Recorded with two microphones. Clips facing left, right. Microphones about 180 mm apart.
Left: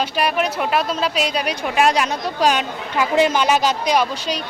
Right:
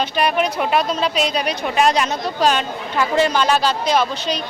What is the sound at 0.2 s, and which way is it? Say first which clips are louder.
Speech: right 2 dB; 5° left (ahead or behind).